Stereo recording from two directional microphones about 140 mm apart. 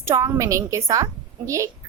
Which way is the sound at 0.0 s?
20° right (ahead or behind).